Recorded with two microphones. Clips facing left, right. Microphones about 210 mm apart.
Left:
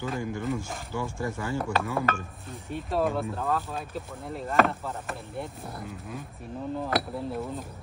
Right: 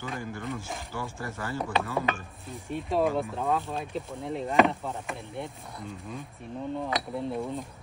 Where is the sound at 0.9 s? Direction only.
15° left (ahead or behind).